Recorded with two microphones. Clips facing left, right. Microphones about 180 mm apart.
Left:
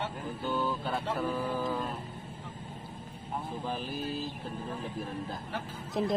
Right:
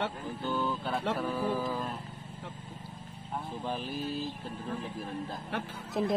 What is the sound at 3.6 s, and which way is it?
Speech, centre (ahead or behind).